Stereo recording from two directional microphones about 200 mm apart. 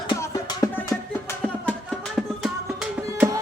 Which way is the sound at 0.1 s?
15° left (ahead or behind).